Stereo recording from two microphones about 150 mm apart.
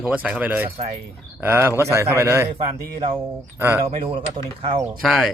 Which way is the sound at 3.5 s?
15° right (ahead or behind).